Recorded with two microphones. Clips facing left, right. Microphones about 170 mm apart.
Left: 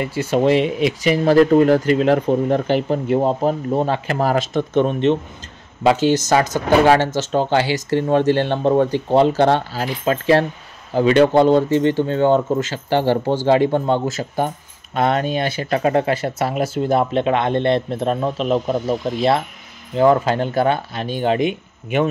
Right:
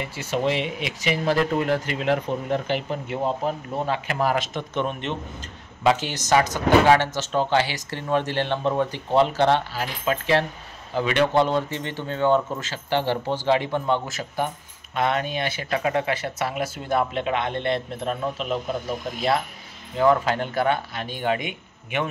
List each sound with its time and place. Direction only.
0.3 s speech: 40° left (ahead or behind)
15.0 s speech: 40° left (ahead or behind)
20.0 s speech: 30° left (ahead or behind)